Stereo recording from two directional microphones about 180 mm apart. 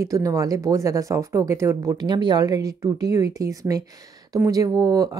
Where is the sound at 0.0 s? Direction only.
20° right (ahead or behind).